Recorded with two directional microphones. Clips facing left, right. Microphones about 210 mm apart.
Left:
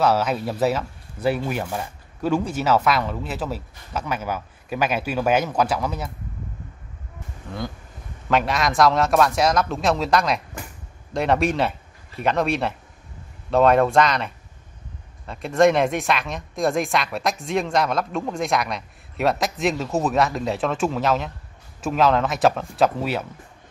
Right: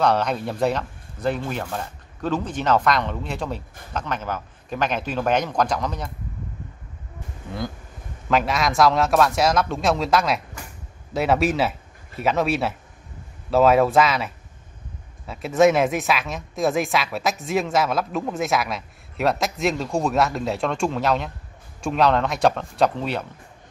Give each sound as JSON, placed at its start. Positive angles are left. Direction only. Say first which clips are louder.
{"t": 0.0, "sound": "a man's voice", "louder": "left 1 dB", "side_deg": 5}
{"t": 8.3, "sound": "speech", "louder": "even", "side_deg": 0}